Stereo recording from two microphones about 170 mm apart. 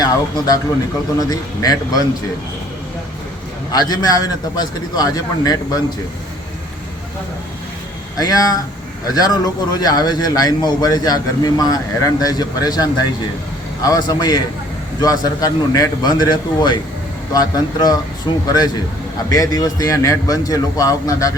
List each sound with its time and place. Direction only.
0.0 s a man's voice: 20° left (ahead or behind)
3.7 s a man's voice: 25° left (ahead or behind)
8.2 s a man's voice: 20° left (ahead or behind)